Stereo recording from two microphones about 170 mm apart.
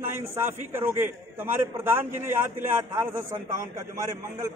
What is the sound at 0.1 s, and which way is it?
A man's voice, 15° right (ahead or behind).